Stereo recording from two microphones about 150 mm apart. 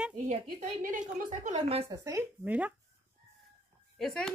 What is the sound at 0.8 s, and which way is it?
A woman's voice, 60° right (ahead or behind).